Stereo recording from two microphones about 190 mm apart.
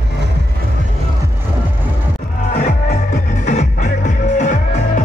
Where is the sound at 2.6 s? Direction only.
45° left (ahead or behind).